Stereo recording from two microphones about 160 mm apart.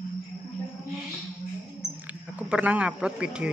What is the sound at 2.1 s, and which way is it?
Speech, 10° right (ahead or behind).